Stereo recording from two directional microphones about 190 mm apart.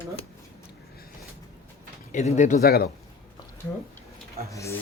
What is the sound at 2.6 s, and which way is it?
Speech, 55° left (ahead or behind).